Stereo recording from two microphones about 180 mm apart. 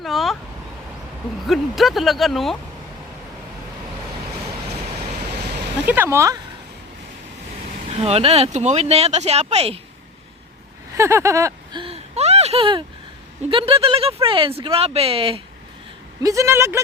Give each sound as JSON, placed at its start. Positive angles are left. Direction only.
{"t": 0.0, "sound": "a sound", "side_deg": 0}
{"t": 1.5, "sound": "speech", "side_deg": 0}
{"t": 5.8, "sound": "speech", "side_deg": -10}
{"t": 7.9, "sound": "speech", "side_deg": -35}
{"t": 10.9, "sound": "a sound", "side_deg": -15}
{"t": 13.5, "sound": "speech", "side_deg": -30}
{"t": 16.2, "sound": "speech", "side_deg": -15}